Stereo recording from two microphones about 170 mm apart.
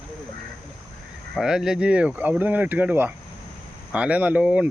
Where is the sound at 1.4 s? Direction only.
5° right (ahead or behind).